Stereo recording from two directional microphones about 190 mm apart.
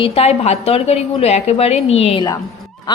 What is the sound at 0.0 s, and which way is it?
A woman's voice, 35° left (ahead or behind).